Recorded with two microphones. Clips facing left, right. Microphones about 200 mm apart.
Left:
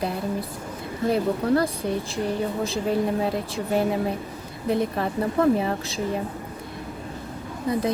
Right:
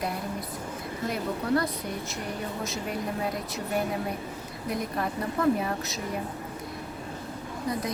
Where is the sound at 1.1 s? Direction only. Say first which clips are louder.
Left 6 dB; 30° left (ahead or behind).